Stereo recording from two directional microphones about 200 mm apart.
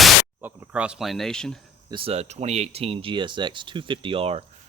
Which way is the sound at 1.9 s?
30° right (ahead or behind).